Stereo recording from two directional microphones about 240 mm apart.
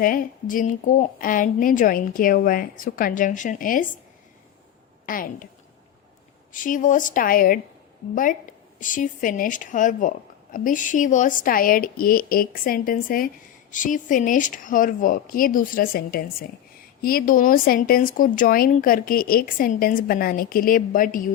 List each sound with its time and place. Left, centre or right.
0.0 s speech: left
5.0 s speech: left
6.5 s speech: left